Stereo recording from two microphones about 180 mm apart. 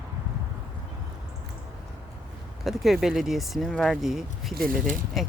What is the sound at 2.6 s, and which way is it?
Speech, centre (ahead or behind).